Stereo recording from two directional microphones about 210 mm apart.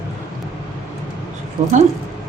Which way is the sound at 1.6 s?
35° right (ahead or behind).